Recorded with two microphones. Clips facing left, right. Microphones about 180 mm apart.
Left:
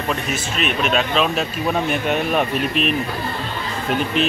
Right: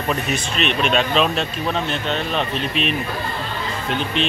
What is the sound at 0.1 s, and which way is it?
Speech, 5° left (ahead or behind).